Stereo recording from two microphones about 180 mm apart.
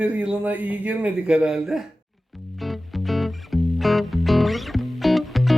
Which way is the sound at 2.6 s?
Centre (ahead or behind).